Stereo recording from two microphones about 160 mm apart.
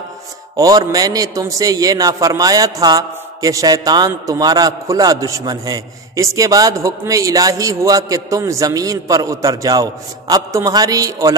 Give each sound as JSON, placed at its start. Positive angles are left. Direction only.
{"t": 0.6, "sound": "a man's voice", "side_deg": -25}